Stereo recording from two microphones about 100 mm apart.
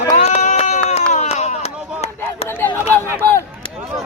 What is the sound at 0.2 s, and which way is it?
Bleat, 90° left.